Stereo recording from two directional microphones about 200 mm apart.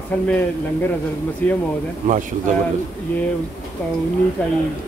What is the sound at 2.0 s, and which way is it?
Speech, 40° right (ahead or behind).